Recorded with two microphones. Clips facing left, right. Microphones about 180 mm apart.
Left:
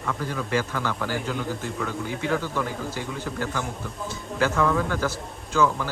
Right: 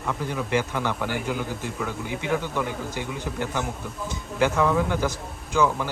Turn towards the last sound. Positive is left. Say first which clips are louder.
# even
turn(degrees=-15)  # may be behind; listen again after turning